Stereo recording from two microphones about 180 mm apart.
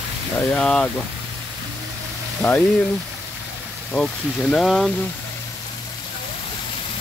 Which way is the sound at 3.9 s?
5° left (ahead or behind).